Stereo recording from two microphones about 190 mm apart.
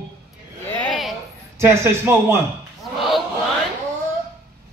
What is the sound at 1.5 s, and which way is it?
Speech, 15° right (ahead or behind).